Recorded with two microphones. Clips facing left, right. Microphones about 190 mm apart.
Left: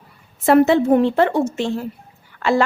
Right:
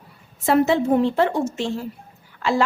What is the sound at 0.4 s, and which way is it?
A woman's voice, 60° left (ahead or behind).